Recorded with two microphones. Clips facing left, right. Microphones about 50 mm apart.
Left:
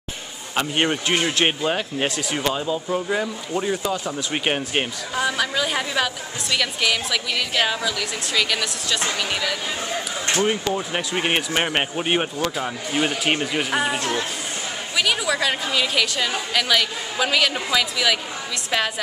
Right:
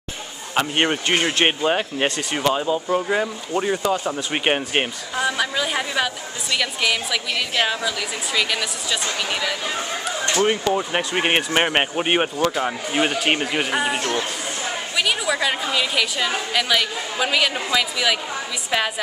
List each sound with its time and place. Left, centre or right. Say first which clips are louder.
0.6 s a woman's voice: right 1 dB; centre
10.4 s a woman's voice: right 4 dB; centre